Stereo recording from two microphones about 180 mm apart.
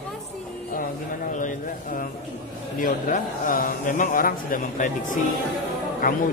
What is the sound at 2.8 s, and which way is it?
Speech, 50° left (ahead or behind).